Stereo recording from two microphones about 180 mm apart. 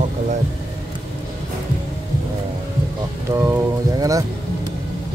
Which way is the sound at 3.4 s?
15° right (ahead or behind).